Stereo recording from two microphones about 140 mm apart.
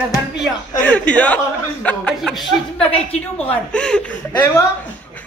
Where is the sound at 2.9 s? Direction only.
45° left (ahead or behind).